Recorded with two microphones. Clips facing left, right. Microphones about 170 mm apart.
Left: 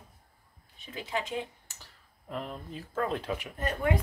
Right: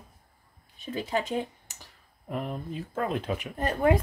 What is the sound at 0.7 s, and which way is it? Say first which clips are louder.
Speech: right 5 dB; 40° right (ahead or behind).